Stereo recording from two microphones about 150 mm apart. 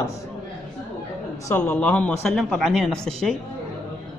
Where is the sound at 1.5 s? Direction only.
10° left (ahead or behind).